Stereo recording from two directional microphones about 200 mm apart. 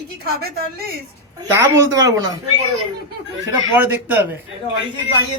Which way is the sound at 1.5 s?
15° right (ahead or behind).